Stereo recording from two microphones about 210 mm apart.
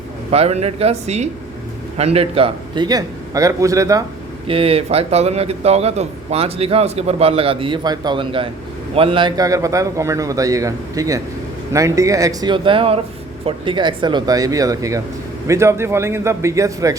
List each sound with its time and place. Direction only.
0.3 s a man's voice: 30° right (ahead or behind); by 4.0 s 15° right (ahead or behind)
4.4 s a man's voice: 25° right (ahead or behind)